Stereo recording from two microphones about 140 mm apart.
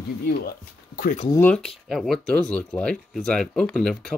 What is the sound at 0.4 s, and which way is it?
Speech, 90° left.